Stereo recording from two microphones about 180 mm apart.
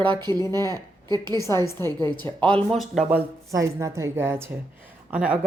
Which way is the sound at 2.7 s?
Centre (ahead or behind).